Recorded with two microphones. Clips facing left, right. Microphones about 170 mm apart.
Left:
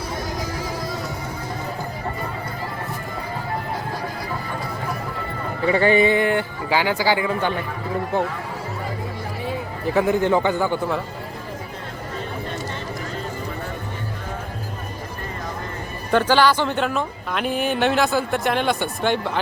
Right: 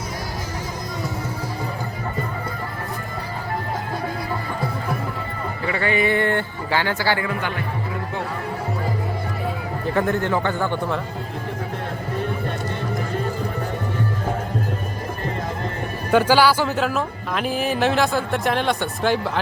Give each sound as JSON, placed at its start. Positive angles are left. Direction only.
{"t": 5.6, "sound": "speech", "side_deg": 30}
{"t": 6.1, "sound": "speech", "side_deg": 15}
{"t": 9.9, "sound": "speech", "side_deg": 10}
{"t": 16.1, "sound": "speech", "side_deg": -10}